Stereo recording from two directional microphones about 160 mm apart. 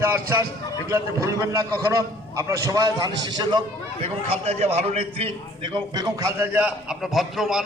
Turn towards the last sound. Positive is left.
turn(degrees=0)  # may be behind; listen again after turning